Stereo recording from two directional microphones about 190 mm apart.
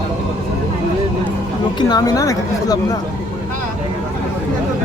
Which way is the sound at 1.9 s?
20° left (ahead or behind).